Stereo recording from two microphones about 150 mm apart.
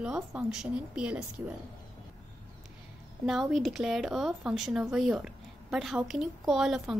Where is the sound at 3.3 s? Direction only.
5° right (ahead or behind).